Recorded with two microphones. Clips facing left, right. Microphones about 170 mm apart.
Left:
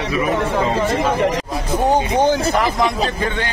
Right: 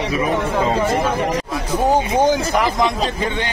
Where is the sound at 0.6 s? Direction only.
10° right (ahead or behind).